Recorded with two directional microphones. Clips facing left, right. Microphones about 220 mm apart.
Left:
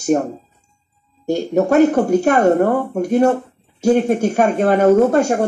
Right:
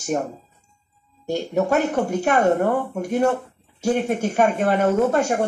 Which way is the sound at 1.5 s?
40° left (ahead or behind).